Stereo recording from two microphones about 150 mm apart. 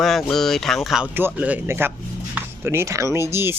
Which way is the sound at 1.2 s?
10° right (ahead or behind).